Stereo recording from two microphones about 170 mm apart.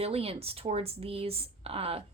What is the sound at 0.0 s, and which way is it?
Speech, 35° right (ahead or behind).